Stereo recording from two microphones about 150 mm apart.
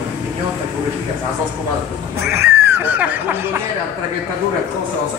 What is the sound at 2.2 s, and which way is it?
Speech, 15° right (ahead or behind).